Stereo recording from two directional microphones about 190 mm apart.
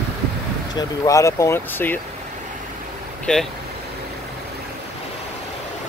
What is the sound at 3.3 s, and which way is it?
Speech, 5° left (ahead or behind).